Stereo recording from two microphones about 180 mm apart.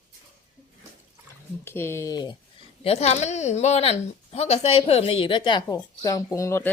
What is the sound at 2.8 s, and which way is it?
Speech, 35° left (ahead or behind).